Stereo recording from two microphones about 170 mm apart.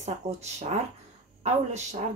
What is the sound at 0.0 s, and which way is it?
Speech, 40° right (ahead or behind).